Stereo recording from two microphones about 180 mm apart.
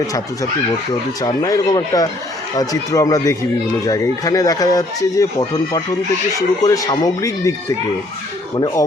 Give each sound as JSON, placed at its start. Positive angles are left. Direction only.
{"t": 1.2, "sound": "speech", "side_deg": 20}
{"t": 8.5, "sound": "speech", "side_deg": 25}